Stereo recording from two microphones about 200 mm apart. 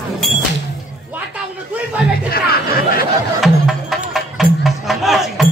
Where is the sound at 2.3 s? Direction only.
50° left (ahead or behind).